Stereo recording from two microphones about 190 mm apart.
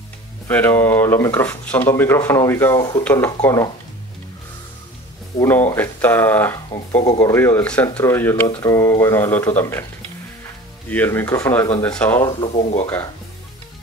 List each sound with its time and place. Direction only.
0.5 s speech: 10° left (ahead or behind)
5.4 s speech: 10° left (ahead or behind)
10.9 s speech: 10° left (ahead or behind)
12.3 s speech: 35° left (ahead or behind)